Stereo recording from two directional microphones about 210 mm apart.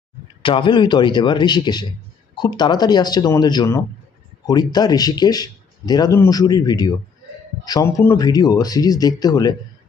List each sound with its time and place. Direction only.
0.4 s speech: 25° left (ahead or behind)